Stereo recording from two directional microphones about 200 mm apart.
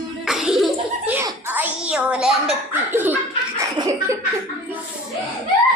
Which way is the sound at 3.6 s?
15° right (ahead or behind).